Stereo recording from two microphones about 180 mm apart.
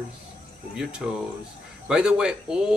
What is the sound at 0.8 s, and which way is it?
Speech, 5° right (ahead or behind).